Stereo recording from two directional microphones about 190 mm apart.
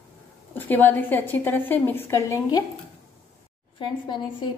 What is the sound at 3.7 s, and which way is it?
Speech, 25° left (ahead or behind).